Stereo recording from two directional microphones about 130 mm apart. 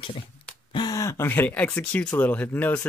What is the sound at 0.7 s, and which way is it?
Speech, 30° left (ahead or behind).